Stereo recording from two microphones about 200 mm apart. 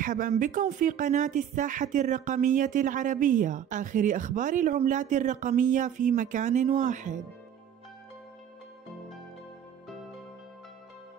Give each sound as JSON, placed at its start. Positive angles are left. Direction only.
{"t": 0.0, "sound": "speech", "side_deg": -45}